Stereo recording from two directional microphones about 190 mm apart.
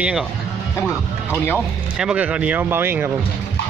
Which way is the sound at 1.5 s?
5° right (ahead or behind).